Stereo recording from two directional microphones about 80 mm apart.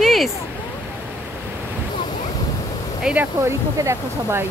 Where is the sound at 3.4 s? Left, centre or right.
Right.